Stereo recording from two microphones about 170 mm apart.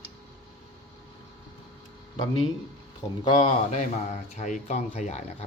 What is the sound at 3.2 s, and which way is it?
Speech, 25° left (ahead or behind).